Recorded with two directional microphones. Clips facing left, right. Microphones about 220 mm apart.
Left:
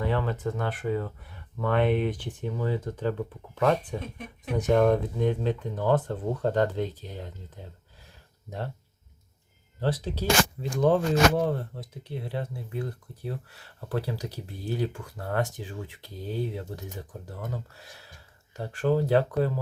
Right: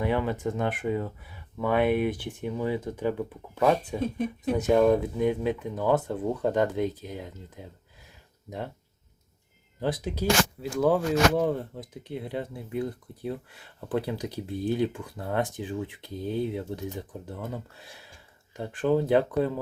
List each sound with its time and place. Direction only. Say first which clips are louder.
0.0 s speech: right 2 dB; 15° right (ahead or behind)
1.2 s speech: right 1 dB; 5° right (ahead or behind)
9.8 s speech: right 1 dB; 15° right (ahead or behind)
18.6 s speech: right 1 dB; 20° right (ahead or behind)